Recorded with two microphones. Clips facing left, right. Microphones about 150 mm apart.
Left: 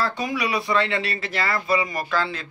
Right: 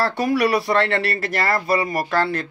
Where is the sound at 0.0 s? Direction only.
65° right (ahead or behind).